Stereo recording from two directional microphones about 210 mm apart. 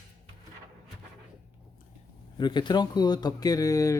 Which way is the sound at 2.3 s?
20° left (ahead or behind).